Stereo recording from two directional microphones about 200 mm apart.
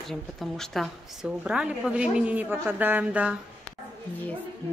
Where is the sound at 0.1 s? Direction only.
Centre (ahead or behind).